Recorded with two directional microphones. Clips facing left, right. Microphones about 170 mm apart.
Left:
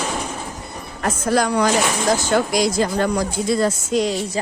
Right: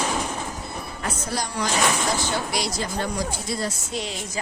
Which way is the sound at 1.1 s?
80° left.